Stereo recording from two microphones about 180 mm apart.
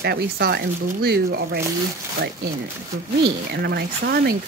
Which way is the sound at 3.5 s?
65° right (ahead or behind).